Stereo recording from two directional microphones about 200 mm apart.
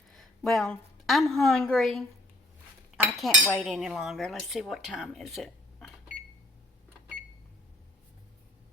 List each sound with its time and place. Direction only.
0.2 s a woman's voice: centre (ahead or behind)